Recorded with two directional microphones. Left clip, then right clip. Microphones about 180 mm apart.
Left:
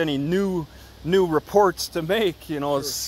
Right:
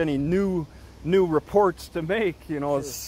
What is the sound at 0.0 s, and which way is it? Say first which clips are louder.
Speech: left 1 dB; 5° right (ahead or behind).